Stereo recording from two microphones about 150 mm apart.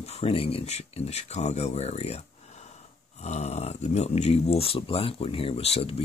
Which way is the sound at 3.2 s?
45° left (ahead or behind).